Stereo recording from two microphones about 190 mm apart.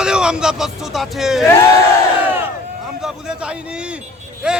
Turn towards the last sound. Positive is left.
turn(degrees=-5)  # may be behind; listen again after turning